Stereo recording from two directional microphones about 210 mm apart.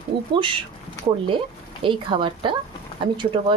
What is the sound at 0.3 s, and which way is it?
Speech, 25° right (ahead or behind).